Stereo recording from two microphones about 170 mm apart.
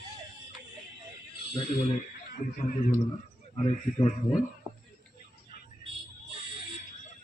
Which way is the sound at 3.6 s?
40° left (ahead or behind).